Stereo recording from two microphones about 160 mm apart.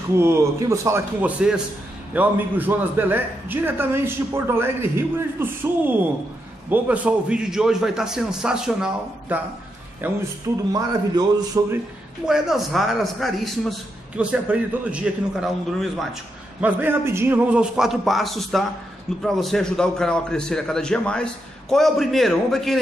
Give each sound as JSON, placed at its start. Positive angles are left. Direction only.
{"t": 0.2, "sound": "a woman's voice", "side_deg": -15}
{"t": 10.7, "sound": "a man's voice", "side_deg": -25}
{"t": 12.3, "sound": "a man's voice", "side_deg": 0}
{"t": 16.6, "sound": "a man's voice", "side_deg": -15}